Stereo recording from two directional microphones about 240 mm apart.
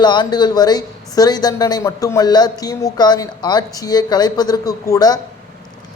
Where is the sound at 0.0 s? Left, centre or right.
Centre.